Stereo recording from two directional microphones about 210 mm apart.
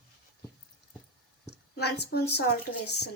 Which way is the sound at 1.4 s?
50° left (ahead or behind).